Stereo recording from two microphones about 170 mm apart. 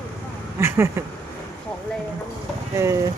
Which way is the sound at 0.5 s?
15° right (ahead or behind).